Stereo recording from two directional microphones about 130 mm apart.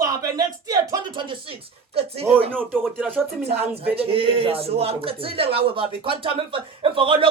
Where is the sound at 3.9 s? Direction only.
45° right (ahead or behind).